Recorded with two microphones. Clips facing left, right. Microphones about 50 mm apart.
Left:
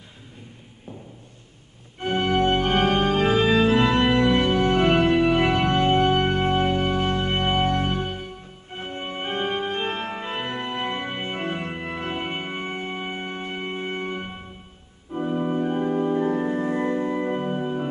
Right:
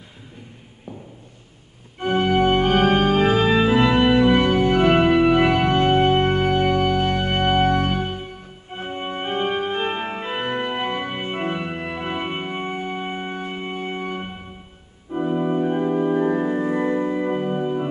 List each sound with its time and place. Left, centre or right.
2.3 s organ: right
7.0 s music: right
8.7 s organ: centre
10.4 s organ: right
10.8 s organ: centre
12.2 s music: centre
15.1 s organ: centre
16.3 s music: centre